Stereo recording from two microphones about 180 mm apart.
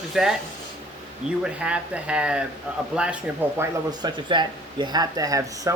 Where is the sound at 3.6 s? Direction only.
25° right (ahead or behind).